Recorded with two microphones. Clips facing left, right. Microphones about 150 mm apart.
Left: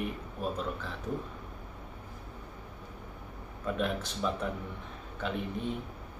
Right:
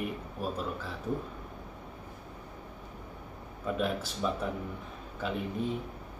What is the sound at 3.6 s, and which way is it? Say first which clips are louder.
Speech: right 1 dB; 5° right (ahead or behind).